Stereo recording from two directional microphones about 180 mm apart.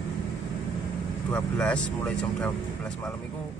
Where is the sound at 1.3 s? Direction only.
5° left (ahead or behind).